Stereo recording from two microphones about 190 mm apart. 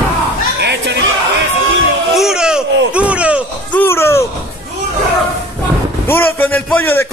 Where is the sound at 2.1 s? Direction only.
5° right (ahead or behind).